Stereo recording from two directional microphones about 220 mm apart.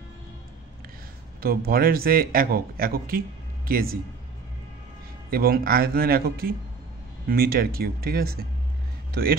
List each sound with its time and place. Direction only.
1.4 s a man's voice: 45° right (ahead or behind)
5.3 s a man's voice: 40° right (ahead or behind)